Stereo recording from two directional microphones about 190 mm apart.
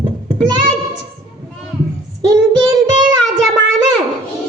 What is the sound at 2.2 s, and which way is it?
Child singing, 20° right (ahead or behind).